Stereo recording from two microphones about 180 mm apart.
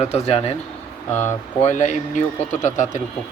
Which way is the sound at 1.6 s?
40° left (ahead or behind).